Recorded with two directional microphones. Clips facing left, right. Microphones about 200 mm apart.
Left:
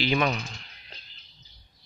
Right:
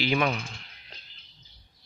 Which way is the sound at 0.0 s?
10° right (ahead or behind).